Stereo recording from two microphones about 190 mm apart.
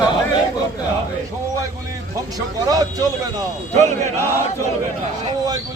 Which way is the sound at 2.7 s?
20° right (ahead or behind).